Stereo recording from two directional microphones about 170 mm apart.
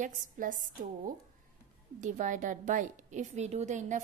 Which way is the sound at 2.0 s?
45° right (ahead or behind).